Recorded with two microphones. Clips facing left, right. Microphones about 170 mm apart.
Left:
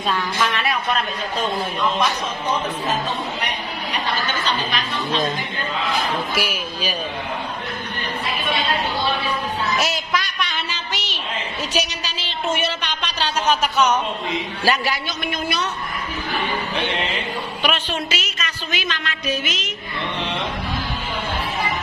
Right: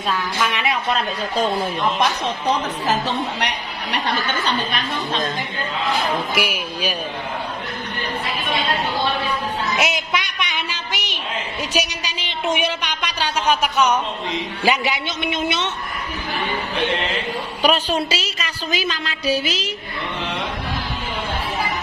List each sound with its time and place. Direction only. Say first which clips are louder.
0.1 s speech: even; 10° right (ahead or behind)
2.2 s speech: right 2 dB; 75° right (ahead or behind)
6.3 s speech: right 1 dB; 10° right (ahead or behind)
9.8 s a sound: right 1 dB; 20° right (ahead or behind)
14.6 s a man's voice: right 2 dB; 20° right (ahead or behind)
17.6 s a woman's voice: right 6 dB; 35° right (ahead or behind)